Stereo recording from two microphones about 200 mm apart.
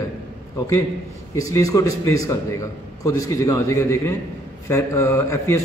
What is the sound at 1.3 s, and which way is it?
A man's voice, 15° left (ahead or behind).